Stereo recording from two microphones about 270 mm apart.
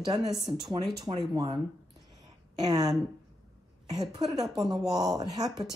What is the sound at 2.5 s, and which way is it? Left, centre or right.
Speech, centre.